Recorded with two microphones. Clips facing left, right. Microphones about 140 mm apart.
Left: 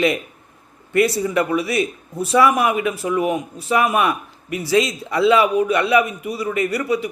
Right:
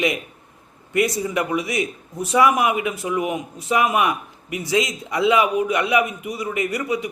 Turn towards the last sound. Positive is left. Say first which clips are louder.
# left 3 dB
turn(degrees=-20)  # may be behind; listen again after turning